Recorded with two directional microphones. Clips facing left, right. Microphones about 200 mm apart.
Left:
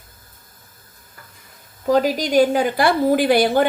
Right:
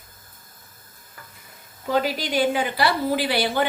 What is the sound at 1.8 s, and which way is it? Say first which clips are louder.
Speech: left 6 dB; 40° left (ahead or behind).